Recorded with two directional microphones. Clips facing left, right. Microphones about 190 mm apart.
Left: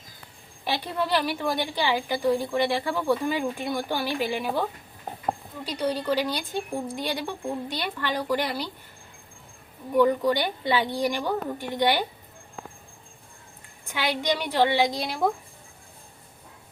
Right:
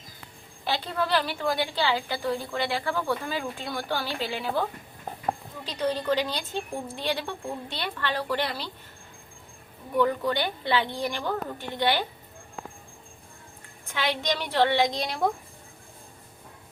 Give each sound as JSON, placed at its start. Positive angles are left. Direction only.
{"t": 0.6, "sound": "a woman's voice", "side_deg": 15}
{"t": 9.9, "sound": "a woman's voice", "side_deg": 15}
{"t": 13.9, "sound": "a woman's voice", "side_deg": 10}